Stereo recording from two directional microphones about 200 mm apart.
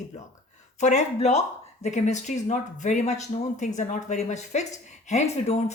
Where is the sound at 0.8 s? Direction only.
35° left (ahead or behind).